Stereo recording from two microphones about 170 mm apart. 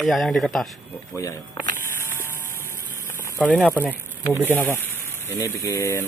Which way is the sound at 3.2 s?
10° left (ahead or behind).